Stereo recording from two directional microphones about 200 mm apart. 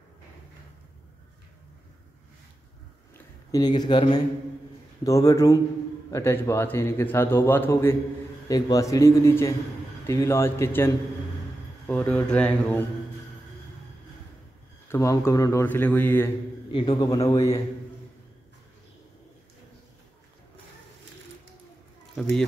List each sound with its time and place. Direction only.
3.5 s speech: 20° left (ahead or behind)
11.9 s speech: 5° left (ahead or behind)
14.9 s speech: 15° left (ahead or behind)
16.7 s speech: 20° left (ahead or behind)